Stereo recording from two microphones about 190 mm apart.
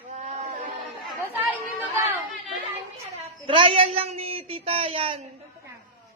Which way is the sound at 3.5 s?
30° right (ahead or behind).